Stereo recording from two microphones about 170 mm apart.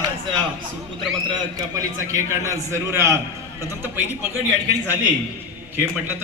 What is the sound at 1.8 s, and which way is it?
A man's voice, 20° right (ahead or behind).